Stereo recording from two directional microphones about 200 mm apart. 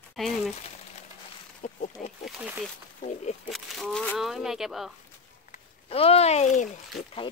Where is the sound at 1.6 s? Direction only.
40° left (ahead or behind).